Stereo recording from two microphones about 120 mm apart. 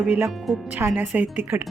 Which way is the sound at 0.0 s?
10° right (ahead or behind).